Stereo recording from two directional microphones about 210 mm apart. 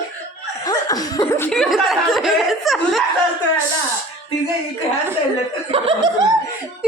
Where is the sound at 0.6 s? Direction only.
20° left (ahead or behind).